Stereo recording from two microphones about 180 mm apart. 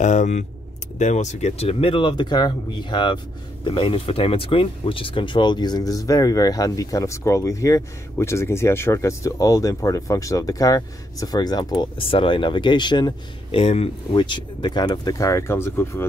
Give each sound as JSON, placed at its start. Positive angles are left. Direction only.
{"t": 0.0, "sound": "speech", "side_deg": 40}